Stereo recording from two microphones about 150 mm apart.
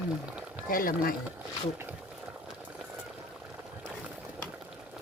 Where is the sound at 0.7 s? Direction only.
70° left (ahead or behind).